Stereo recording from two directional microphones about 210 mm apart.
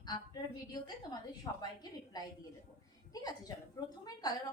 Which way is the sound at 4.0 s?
20° left (ahead or behind).